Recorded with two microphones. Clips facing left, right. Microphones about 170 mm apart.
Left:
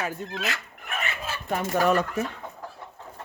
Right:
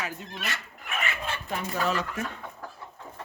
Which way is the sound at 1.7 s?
55° left (ahead or behind).